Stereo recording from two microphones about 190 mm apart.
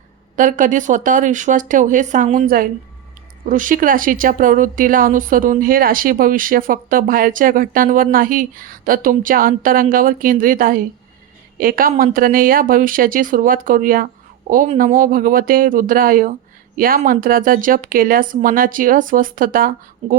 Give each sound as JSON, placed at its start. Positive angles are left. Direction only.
{"t": 0.3, "sound": "speech", "side_deg": -45}